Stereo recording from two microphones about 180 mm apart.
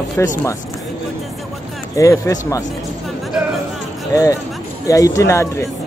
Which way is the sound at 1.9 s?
15° left (ahead or behind).